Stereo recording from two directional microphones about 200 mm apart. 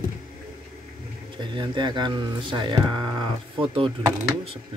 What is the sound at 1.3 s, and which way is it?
Speech, 25° right (ahead or behind).